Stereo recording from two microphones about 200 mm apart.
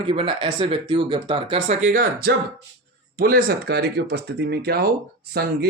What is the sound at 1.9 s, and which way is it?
Speech, 50° right (ahead or behind).